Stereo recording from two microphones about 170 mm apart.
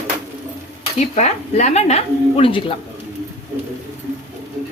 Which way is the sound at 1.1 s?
40° left (ahead or behind).